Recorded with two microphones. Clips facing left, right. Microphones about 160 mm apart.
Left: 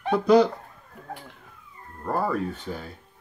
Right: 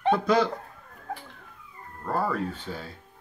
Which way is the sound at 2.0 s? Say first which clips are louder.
Left 2 dB; 15° left (ahead or behind).